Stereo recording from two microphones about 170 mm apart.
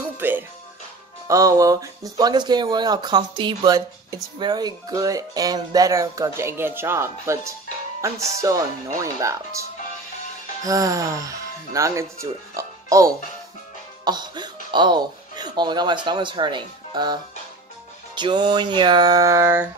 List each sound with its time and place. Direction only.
0.2 s music: 10° right (ahead or behind)
1.2 s speech: 20° right (ahead or behind)
8.4 s speech: 20° right (ahead or behind)
10.6 s speech: 20° right (ahead or behind)